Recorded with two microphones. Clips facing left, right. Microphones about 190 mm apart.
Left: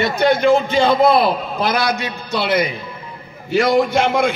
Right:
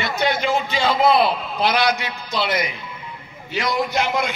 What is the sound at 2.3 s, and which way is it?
Speech, 60° left (ahead or behind).